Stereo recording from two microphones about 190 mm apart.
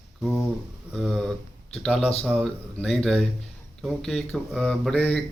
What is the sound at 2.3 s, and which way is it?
A man's voice, centre (ahead or behind).